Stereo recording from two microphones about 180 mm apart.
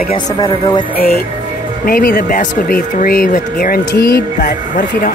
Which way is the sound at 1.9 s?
55° left (ahead or behind).